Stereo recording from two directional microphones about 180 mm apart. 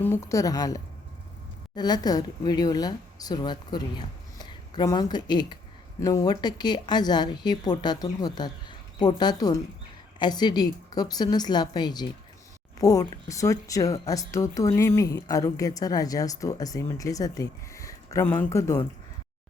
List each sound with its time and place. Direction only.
0.0 s a woman's voice: 15° left (ahead or behind)